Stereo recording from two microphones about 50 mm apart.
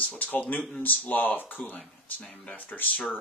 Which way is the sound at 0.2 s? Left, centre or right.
Left.